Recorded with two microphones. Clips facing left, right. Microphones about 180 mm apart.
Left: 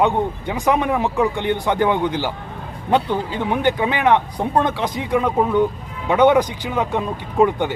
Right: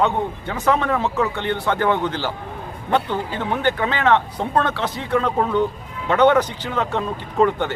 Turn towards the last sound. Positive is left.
turn(degrees=10)  # may be behind; listen again after turning